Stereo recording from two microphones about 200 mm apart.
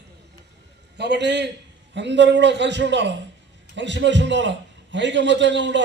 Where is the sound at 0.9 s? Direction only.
60° right (ahead or behind).